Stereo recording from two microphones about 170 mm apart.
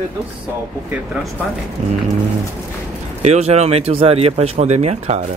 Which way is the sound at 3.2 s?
40° right (ahead or behind).